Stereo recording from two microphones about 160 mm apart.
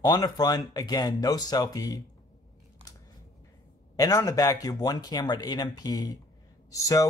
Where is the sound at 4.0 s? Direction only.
20° left (ahead or behind).